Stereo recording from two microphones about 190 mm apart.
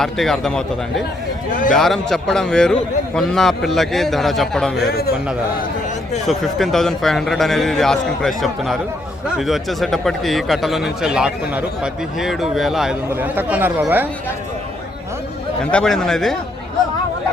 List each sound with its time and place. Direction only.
0.0 s a man's voice: centre (ahead or behind)
1.7 s a man's voice: centre (ahead or behind)
4.9 s a man's voice: 55° left (ahead or behind)
6.2 s a man's voice: centre (ahead or behind)
15.7 s a man's voice: 5° left (ahead or behind)